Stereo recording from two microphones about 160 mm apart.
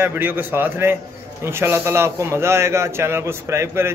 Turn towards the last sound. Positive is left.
turn(degrees=-15)  # may be behind; listen again after turning